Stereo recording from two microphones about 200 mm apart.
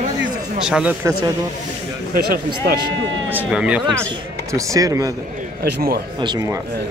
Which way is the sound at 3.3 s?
5° right (ahead or behind).